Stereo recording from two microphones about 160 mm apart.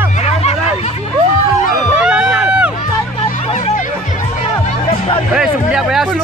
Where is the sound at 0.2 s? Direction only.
40° left (ahead or behind).